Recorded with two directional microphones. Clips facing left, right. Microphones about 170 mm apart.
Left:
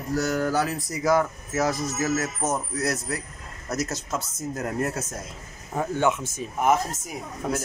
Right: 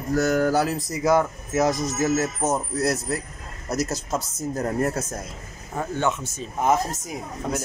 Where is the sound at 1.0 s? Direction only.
20° right (ahead or behind).